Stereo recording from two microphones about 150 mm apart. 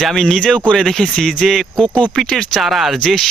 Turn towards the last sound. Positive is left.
turn(degrees=5)  # may be behind; listen again after turning